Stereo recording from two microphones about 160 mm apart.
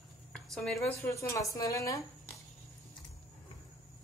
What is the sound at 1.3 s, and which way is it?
Speech, 20° left (ahead or behind).